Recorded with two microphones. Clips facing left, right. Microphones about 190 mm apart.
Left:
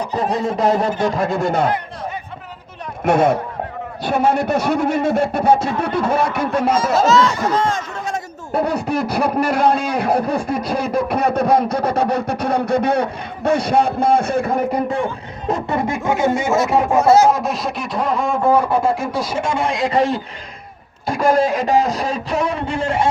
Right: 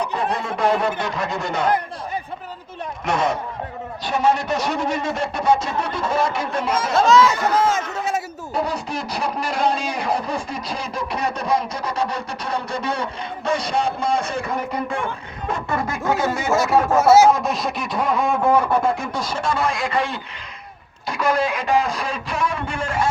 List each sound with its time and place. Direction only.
0.4 s speech: 40° left (ahead or behind)
3.0 s a sound: 55° left (ahead or behind)
6.9 s speech: 5° left (ahead or behind)
8.5 s a sound: 60° left (ahead or behind)
15.4 s speech: 35° left (ahead or behind)
15.9 s speech: 15° left (ahead or behind)
17.0 s speech: 5° right (ahead or behind)
19.8 s speech: 40° left (ahead or behind)